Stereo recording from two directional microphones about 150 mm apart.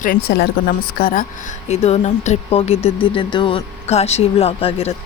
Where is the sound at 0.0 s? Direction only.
80° left.